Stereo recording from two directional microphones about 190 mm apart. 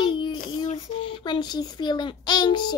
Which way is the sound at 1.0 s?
25° left (ahead or behind).